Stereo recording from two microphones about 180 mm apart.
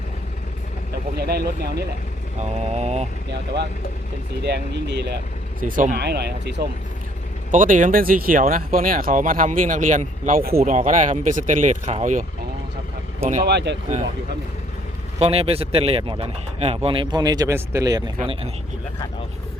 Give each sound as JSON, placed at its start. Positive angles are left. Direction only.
{"t": 1.1, "sound": "speech", "side_deg": -60}
{"t": 2.4, "sound": "speech", "side_deg": -35}
{"t": 4.4, "sound": "speech", "side_deg": -70}
{"t": 6.0, "sound": "speech", "side_deg": -65}
{"t": 7.5, "sound": "speech", "side_deg": -45}
{"t": 13.4, "sound": "speech", "side_deg": -70}
{"t": 15.2, "sound": "speech", "side_deg": -35}